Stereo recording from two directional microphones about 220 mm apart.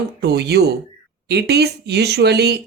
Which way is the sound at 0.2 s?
45° right (ahead or behind).